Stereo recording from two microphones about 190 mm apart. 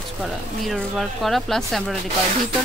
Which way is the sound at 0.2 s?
Centre (ahead or behind).